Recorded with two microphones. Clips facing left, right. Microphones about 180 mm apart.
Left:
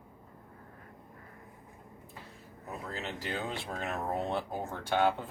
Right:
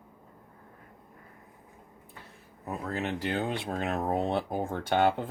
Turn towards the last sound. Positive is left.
turn(degrees=-60)  # may be behind; listen again after turning